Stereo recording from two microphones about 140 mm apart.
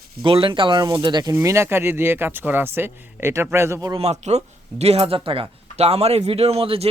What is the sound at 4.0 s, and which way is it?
Speech, 50° right (ahead or behind).